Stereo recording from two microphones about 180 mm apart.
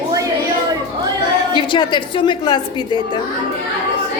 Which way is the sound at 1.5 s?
25° left (ahead or behind).